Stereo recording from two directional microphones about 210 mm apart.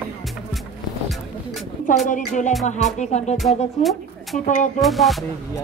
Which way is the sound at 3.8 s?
Centre (ahead or behind).